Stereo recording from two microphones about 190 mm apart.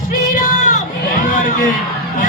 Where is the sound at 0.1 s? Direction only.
45° left (ahead or behind).